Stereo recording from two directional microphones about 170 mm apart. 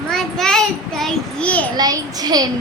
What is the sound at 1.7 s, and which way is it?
Speech, 25° right (ahead or behind).